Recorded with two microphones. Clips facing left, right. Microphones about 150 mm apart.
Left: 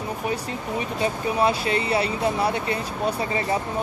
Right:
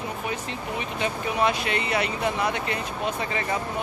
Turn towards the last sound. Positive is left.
turn(degrees=30)  # may be behind; listen again after turning